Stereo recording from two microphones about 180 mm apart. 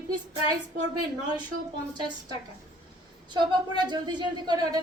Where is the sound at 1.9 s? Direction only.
25° right (ahead or behind).